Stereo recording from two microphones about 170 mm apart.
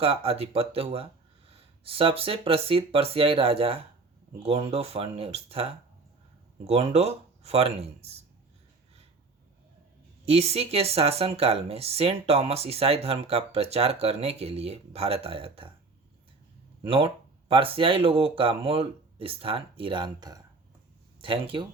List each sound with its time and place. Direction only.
0.0 s speech: 35° right (ahead or behind)
10.2 s speech: 40° right (ahead or behind)
16.8 s speech: 30° right (ahead or behind)